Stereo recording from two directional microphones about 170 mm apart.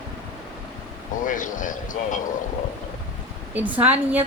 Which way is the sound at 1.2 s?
50° left (ahead or behind).